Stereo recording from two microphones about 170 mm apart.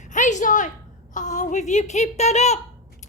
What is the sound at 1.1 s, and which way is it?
A child's voice, 45° left (ahead or behind).